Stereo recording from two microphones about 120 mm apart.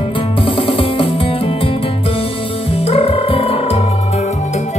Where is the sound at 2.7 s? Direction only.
55° left (ahead or behind).